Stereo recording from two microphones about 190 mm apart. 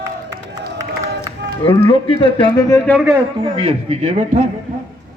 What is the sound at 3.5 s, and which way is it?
Speech, 30° right (ahead or behind).